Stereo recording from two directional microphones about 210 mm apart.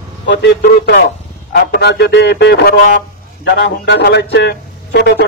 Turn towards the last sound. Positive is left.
turn(degrees=50)  # may be behind; listen again after turning